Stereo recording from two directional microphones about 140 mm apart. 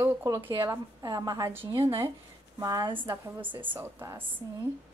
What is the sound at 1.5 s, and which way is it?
A woman's voice, 15° right (ahead or behind).